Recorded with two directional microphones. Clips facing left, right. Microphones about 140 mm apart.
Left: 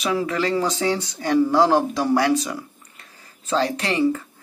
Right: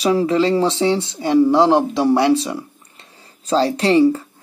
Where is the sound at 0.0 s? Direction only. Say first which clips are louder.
Right 7 dB; 30° right (ahead or behind).